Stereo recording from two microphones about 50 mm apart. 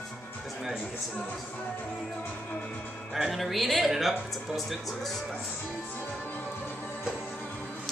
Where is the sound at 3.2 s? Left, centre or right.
Centre.